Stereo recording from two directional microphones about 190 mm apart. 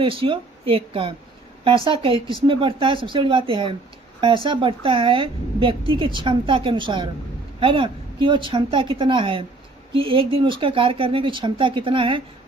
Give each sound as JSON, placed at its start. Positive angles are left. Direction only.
{"t": 0.0, "sound": "a woman's voice", "side_deg": -30}